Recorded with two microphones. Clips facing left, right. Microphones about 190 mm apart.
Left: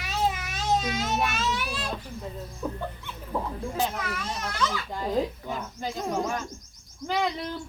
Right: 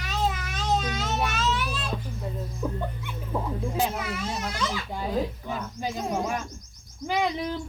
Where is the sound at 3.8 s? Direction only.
10° right (ahead or behind).